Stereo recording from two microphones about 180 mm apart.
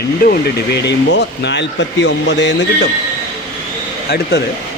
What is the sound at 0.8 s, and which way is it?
Speech, 75° left (ahead or behind).